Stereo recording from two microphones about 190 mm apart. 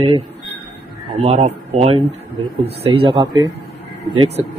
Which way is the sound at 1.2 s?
35° right (ahead or behind).